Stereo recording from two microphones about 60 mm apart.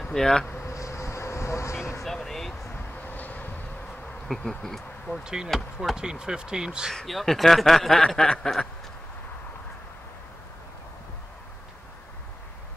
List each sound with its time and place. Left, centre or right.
0.0 s speech: centre
0.5 s a sound: left
0.7 s vehicle: left
2.0 s speech: centre
2.7 s vehicle: left
4.5 s speech: centre
5.2 s speech: centre
5.5 s speech: centre
5.9 s speech: centre
7.0 s speech: centre
8.1 s a sound: centre